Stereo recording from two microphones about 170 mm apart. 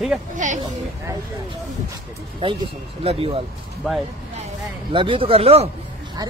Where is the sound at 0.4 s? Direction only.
45° right (ahead or behind).